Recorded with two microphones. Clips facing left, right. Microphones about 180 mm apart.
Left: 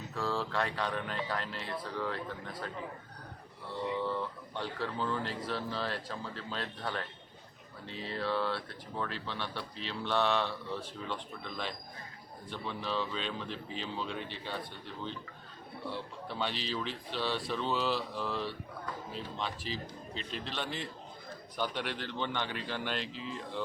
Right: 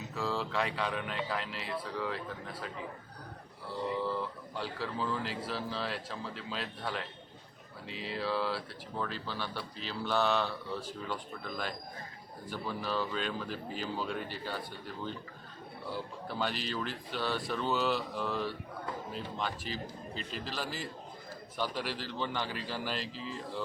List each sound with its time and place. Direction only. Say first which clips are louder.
0.1 s speech: even; centre (ahead or behind)
3.7 s speech: even; centre (ahead or behind)
15.9 s speech: right 1 dB; centre (ahead or behind)